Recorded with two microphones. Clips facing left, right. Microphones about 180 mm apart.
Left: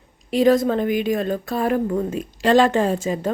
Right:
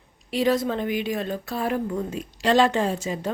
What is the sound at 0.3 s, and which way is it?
A woman's voice, 50° left (ahead or behind).